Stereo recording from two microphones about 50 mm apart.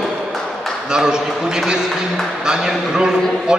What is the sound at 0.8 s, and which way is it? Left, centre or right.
A man's voice, centre.